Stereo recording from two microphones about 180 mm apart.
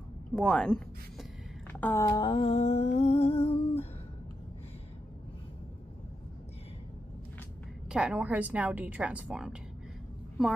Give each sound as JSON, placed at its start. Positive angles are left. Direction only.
{"t": 0.3, "sound": "speech", "side_deg": 5}
{"t": 1.7, "sound": "a sound", "side_deg": 10}
{"t": 7.9, "sound": "a woman's voice", "side_deg": -5}